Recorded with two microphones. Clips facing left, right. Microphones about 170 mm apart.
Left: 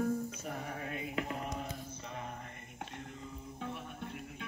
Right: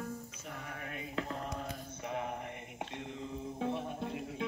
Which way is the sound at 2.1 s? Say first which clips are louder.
Right 8 dB; 15° right (ahead or behind).